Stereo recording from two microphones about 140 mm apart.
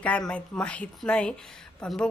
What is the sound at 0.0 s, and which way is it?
Speech, 10° left (ahead or behind).